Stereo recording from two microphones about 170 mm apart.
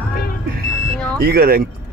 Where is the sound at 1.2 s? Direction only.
65° right (ahead or behind).